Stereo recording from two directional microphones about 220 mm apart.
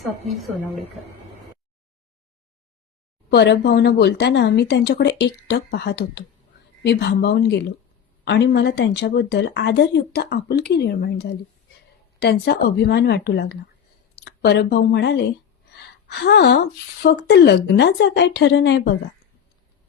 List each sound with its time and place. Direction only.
3.2 s a woman's voice: 50° left (ahead or behind)